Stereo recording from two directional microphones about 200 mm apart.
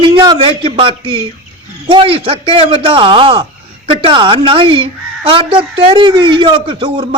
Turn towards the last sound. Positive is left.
turn(degrees=-25)  # may be behind; listen again after turning